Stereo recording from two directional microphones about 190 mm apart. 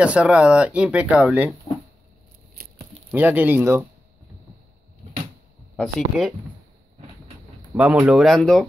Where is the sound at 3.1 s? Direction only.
10° right (ahead or behind).